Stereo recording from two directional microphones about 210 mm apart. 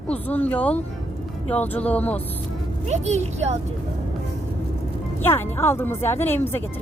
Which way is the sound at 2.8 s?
35° right (ahead or behind).